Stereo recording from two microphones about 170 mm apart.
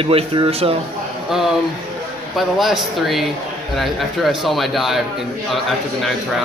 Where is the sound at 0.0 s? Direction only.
30° right (ahead or behind).